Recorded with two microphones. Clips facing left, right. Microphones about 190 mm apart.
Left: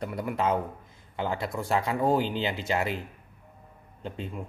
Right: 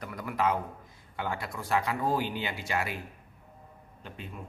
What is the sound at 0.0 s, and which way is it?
A man's voice, 25° left (ahead or behind).